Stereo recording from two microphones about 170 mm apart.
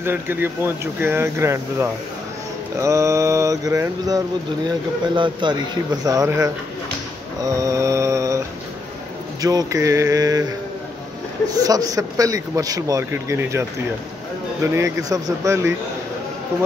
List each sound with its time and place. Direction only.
0.0 s a man's voice: 10° right (ahead or behind)
7.4 s mantra: 20° right (ahead or behind)
9.4 s a man's voice: 20° right (ahead or behind)
11.5 s a man's voice: 20° right (ahead or behind)
14.8 s speech: 20° right (ahead or behind)